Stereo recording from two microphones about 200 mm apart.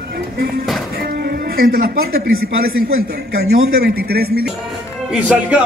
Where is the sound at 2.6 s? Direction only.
55° right (ahead or behind).